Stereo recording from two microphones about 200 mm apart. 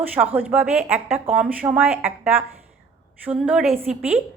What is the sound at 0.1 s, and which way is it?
A woman's voice, 10° right (ahead or behind).